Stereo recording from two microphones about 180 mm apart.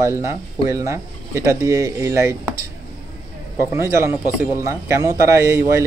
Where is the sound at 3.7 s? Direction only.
15° right (ahead or behind).